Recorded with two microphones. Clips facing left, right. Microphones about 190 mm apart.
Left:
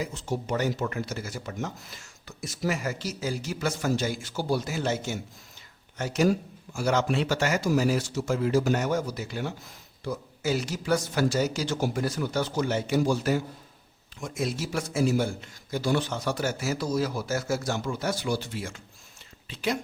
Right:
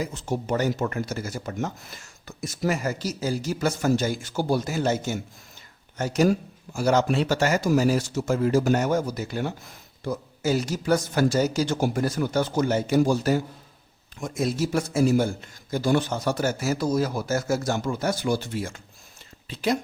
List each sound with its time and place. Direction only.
0.0 s speech: 45° right (ahead or behind)
6.7 s speech: 40° right (ahead or behind)